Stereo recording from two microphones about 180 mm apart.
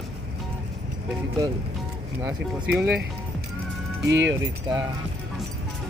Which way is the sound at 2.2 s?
10° right (ahead or behind).